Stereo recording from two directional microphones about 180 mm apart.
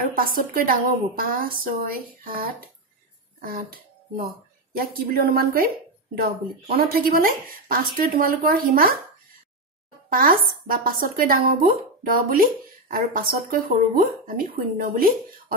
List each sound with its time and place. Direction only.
0.0 s speech: 50° right (ahead or behind)
6.8 s speech: 55° right (ahead or behind)
10.0 s speech: 50° right (ahead or behind)